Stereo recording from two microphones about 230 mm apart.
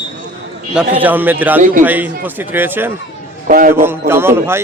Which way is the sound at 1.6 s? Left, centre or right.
Right.